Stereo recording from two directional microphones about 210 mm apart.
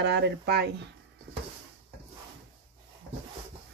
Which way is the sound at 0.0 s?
55° right (ahead or behind).